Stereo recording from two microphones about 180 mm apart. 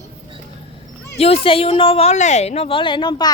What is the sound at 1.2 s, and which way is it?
Speech, 30° left (ahead or behind).